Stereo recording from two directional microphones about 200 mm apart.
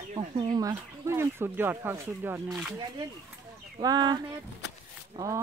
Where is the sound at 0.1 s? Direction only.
25° right (ahead or behind).